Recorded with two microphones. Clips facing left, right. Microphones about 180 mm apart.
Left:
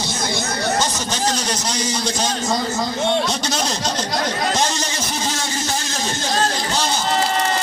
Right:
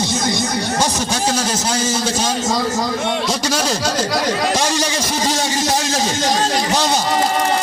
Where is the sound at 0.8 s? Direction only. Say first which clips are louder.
Right 3 dB; 10° right (ahead or behind).